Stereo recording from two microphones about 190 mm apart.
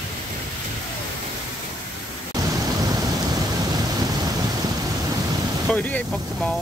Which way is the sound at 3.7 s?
20° right (ahead or behind).